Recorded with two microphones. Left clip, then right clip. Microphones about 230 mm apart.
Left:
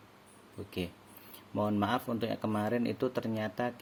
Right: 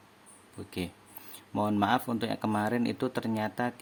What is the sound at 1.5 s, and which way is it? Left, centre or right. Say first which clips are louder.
Speech: right 4 dB; centre.